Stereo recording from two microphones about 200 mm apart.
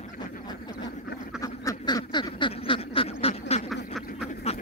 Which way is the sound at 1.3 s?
15° left (ahead or behind).